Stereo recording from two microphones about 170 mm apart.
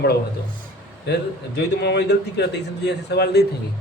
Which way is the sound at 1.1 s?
80° left.